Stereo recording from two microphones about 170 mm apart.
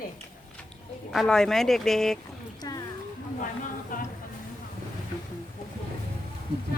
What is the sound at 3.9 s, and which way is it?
Music, 55° left (ahead or behind).